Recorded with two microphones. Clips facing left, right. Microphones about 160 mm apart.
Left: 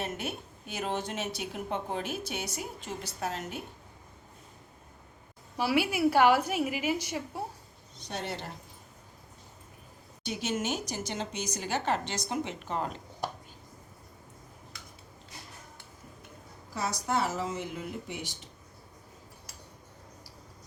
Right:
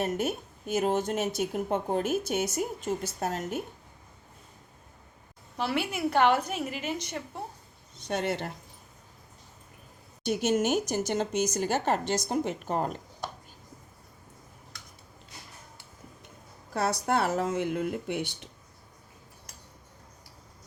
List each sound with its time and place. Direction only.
0.0 s speech: 45° right (ahead or behind)
5.5 s a woman's voice: 5° left (ahead or behind)
8.0 s speech: 55° right (ahead or behind)
10.2 s speech: 50° right (ahead or behind)
16.7 s speech: 60° right (ahead or behind)